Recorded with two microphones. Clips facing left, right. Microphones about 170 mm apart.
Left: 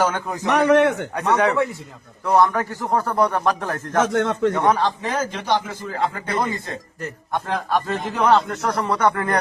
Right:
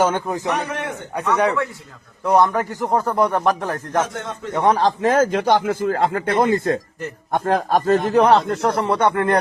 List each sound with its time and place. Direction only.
0.0 s a man's voice: 20° right (ahead or behind)
0.5 s speech: 70° left (ahead or behind)
2.2 s a man's voice: 20° right (ahead or behind)
4.0 s speech: 75° left (ahead or behind)
4.5 s a man's voice: 25° right (ahead or behind)
4.8 s speech: 45° right (ahead or behind); by 9.4 s 25° right (ahead or behind)